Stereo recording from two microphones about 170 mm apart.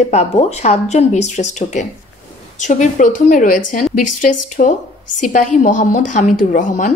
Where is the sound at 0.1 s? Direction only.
40° left (ahead or behind).